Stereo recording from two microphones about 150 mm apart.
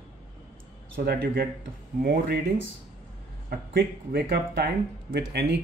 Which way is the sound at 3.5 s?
90° right.